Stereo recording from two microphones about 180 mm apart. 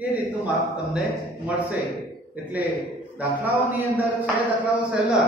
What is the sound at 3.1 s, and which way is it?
Speech, 10° right (ahead or behind).